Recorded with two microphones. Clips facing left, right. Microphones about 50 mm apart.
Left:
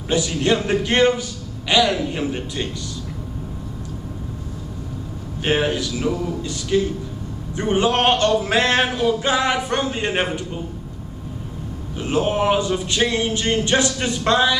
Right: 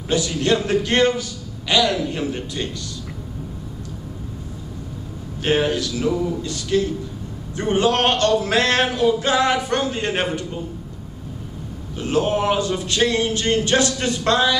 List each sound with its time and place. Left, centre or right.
0.1 s speech: centre
5.4 s speech: centre
12.0 s speech: centre